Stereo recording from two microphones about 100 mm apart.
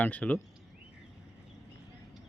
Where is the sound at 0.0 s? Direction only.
15° left (ahead or behind).